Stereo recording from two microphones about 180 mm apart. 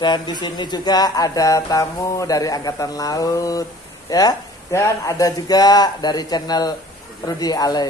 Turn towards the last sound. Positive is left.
turn(degrees=20)  # may be behind; listen again after turning